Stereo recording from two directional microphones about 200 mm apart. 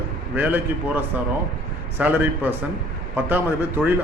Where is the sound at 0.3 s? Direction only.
10° right (ahead or behind).